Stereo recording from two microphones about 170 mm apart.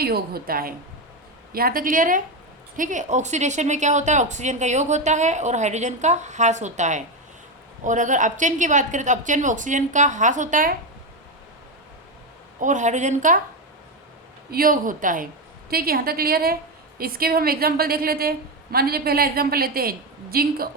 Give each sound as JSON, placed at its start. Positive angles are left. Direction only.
{"t": 0.0, "sound": "a woman's voice", "side_deg": -65}
{"t": 12.5, "sound": "a woman's voice", "side_deg": -45}
{"t": 14.5, "sound": "a woman's voice", "side_deg": -55}